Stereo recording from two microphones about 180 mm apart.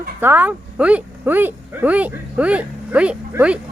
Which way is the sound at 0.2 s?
10° right (ahead or behind).